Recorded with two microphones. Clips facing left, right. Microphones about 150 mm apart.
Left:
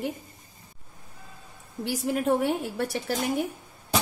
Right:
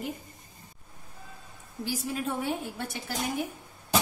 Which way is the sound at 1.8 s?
65° left (ahead or behind).